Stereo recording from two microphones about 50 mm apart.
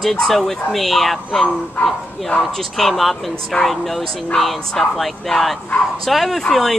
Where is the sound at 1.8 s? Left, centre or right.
Left.